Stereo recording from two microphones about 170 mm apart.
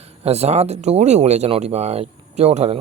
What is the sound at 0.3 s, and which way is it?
Speech, 40° right (ahead or behind).